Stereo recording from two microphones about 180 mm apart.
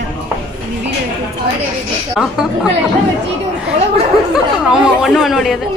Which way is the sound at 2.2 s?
5° right (ahead or behind).